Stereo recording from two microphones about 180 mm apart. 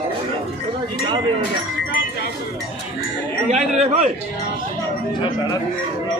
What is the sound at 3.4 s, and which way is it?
Speech, 40° right (ahead or behind).